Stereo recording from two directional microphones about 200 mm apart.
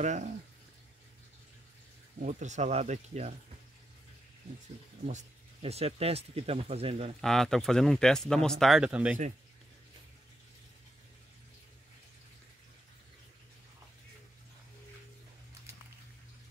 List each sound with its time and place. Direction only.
0.0 s speech: 35° right (ahead or behind)
2.1 s speech: 35° right (ahead or behind)
5.0 s speech: 35° right (ahead or behind)
7.2 s speech: centre (ahead or behind)